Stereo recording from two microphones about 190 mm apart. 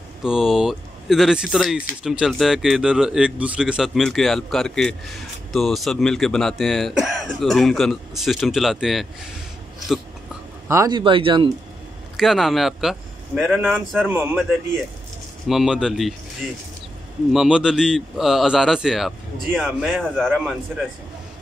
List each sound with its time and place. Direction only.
0.2 s speech: centre (ahead or behind)
10.7 s speech: 20° right (ahead or behind)
12.2 s speech: centre (ahead or behind)
15.4 s speech: centre (ahead or behind)
17.3 s speech: 5° right (ahead or behind)